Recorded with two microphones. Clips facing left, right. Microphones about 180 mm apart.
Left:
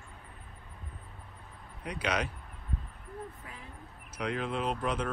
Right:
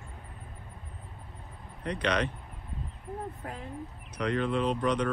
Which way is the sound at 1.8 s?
10° left (ahead or behind).